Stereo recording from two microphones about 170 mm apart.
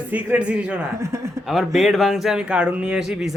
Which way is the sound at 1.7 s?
Centre (ahead or behind).